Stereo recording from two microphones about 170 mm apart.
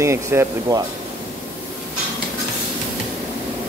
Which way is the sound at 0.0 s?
15° right (ahead or behind).